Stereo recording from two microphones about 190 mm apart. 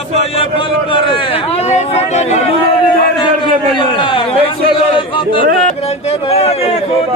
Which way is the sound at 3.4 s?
25° left (ahead or behind).